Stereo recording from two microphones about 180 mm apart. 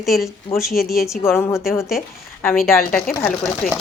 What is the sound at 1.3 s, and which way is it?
Speech, 15° left (ahead or behind).